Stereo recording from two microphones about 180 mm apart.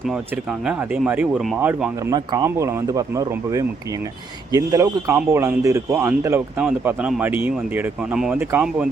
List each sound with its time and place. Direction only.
0.6 s speech: 5° right (ahead or behind)
2.0 s speech: 20° right (ahead or behind)